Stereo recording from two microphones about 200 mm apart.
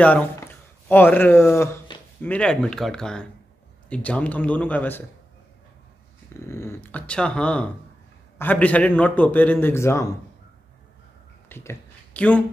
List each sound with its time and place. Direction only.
0.0 s a man's voice: 5° left (ahead or behind)
6.4 s a man's voice: 15° left (ahead or behind)
11.4 s a sound: 10° left (ahead or behind)